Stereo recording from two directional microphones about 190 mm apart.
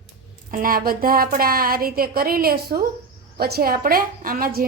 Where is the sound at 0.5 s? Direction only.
50° right (ahead or behind).